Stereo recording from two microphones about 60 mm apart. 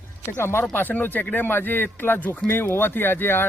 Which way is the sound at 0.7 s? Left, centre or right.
Left.